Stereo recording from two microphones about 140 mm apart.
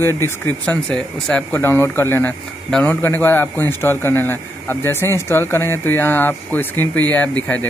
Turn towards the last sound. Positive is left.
turn(degrees=10)  # may be behind; listen again after turning